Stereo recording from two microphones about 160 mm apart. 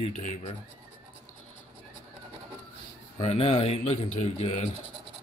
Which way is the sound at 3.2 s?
40° left (ahead or behind).